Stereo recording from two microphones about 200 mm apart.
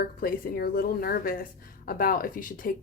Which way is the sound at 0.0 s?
50° left (ahead or behind).